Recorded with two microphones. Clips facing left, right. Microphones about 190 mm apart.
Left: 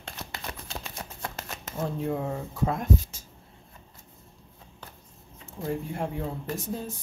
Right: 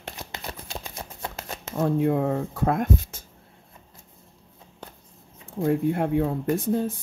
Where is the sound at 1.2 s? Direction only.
25° right (ahead or behind).